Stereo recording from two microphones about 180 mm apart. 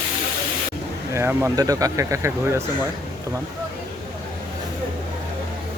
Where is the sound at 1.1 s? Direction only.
15° right (ahead or behind).